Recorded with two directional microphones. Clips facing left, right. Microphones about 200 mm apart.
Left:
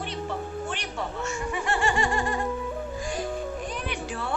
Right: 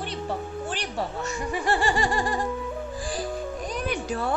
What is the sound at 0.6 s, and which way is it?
Music, 35° right (ahead or behind).